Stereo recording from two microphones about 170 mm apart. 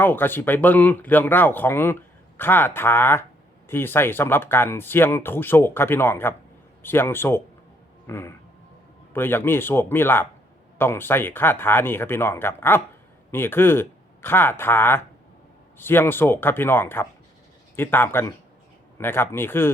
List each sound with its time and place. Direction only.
0.0 s speech: 10° left (ahead or behind)